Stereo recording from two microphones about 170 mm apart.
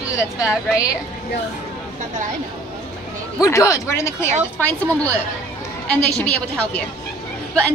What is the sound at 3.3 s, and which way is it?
A woman's voice, 20° left (ahead or behind).